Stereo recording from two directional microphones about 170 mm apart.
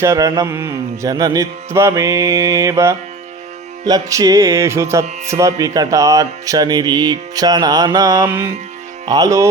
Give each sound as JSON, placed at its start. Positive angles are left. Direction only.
{"t": 0.0, "sound": "music", "side_deg": -20}